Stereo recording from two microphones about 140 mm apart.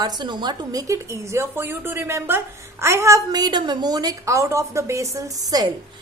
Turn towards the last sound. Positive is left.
turn(degrees=-25)  # may be behind; listen again after turning